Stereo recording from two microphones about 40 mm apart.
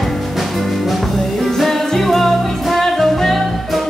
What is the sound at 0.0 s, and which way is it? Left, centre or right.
Music, centre.